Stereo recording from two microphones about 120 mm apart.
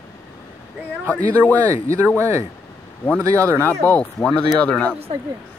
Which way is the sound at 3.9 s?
10° left (ahead or behind).